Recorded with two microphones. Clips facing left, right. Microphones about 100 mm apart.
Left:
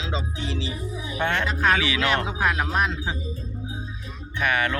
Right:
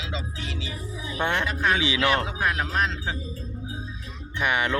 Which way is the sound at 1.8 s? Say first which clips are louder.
Even; 20° right (ahead or behind).